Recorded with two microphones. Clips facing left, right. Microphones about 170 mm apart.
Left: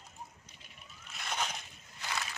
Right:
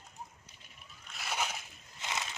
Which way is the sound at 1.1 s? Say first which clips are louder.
Right 1 dB; 5° right (ahead or behind).